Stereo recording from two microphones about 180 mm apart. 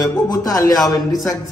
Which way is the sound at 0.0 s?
20° left (ahead or behind).